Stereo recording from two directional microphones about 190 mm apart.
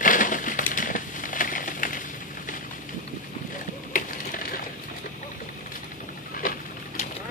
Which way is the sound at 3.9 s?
45° left (ahead or behind).